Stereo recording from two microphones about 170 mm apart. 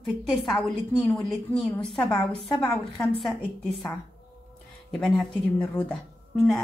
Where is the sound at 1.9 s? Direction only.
20° left (ahead or behind).